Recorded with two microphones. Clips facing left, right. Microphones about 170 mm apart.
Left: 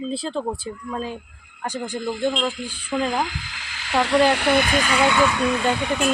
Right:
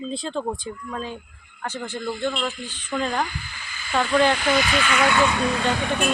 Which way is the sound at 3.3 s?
90° left.